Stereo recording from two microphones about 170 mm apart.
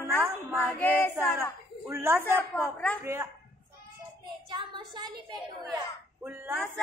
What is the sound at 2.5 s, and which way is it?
Child singing, 10° left (ahead or behind).